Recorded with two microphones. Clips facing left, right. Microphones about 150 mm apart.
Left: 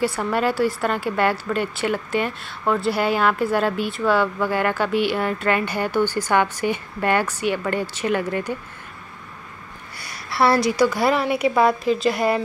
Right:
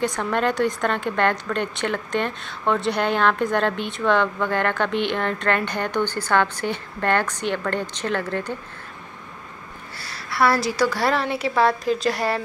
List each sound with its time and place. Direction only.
0.0 s a woman's voice: 5° left (ahead or behind)
10.3 s a woman's voice: 25° left (ahead or behind)
10.8 s a woman's voice: 10° left (ahead or behind)
11.8 s a woman's voice: 5° left (ahead or behind)